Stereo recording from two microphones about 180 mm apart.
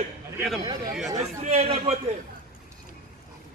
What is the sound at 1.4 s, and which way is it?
Speech, 35° right (ahead or behind).